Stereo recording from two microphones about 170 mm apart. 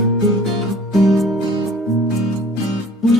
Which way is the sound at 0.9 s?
Centre (ahead or behind).